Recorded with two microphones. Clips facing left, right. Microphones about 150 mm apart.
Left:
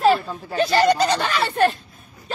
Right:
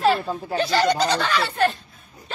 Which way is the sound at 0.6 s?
50° left (ahead or behind).